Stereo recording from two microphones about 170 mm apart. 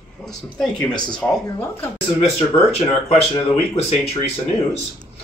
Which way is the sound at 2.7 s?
40° left (ahead or behind).